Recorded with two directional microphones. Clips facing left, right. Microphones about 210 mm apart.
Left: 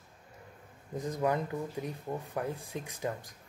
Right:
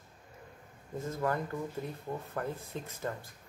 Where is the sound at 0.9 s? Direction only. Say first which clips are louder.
Left 2 dB; 15° left (ahead or behind).